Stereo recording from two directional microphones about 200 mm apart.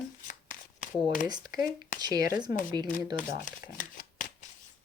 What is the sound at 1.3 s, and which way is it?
Speech, 20° right (ahead or behind).